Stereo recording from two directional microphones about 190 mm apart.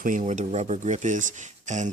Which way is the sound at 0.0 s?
45° right (ahead or behind).